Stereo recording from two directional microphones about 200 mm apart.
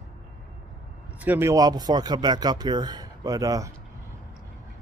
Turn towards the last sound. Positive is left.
turn(degrees=-15)  # may be behind; listen again after turning